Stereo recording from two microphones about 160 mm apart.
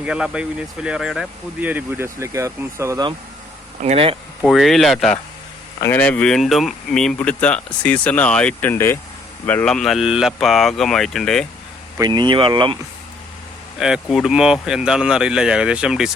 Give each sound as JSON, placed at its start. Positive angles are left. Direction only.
{"t": 0.0, "sound": "speech", "side_deg": -5}
{"t": 3.8, "sound": "speech", "side_deg": -40}
{"t": 4.4, "sound": "speech", "side_deg": 0}
{"t": 11.9, "sound": "speech", "side_deg": -25}
{"t": 13.7, "sound": "speech", "side_deg": -5}